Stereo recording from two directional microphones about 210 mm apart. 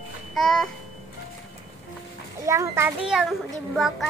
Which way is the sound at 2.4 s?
15° right (ahead or behind).